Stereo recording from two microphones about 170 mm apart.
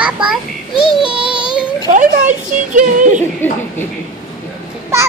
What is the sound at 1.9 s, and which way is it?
Speech, 45° right (ahead or behind).